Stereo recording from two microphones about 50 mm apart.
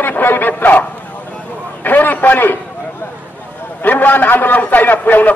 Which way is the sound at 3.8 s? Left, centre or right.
Left.